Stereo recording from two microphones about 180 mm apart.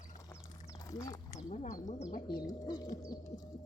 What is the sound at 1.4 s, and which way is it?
Speech, 40° left (ahead or behind).